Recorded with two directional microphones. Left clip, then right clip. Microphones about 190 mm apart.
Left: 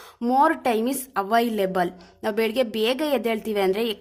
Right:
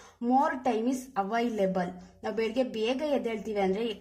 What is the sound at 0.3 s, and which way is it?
A woman's voice, 35° left (ahead or behind).